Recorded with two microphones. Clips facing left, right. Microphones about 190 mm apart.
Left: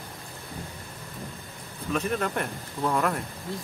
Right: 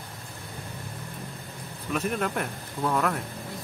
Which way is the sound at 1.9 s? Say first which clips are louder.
Even; 5° right (ahead or behind).